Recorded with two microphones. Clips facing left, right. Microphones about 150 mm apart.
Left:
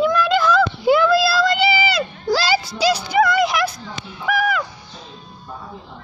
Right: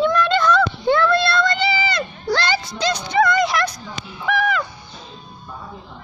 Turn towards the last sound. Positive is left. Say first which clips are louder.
# even
turn(degrees=10)  # may be behind; listen again after turning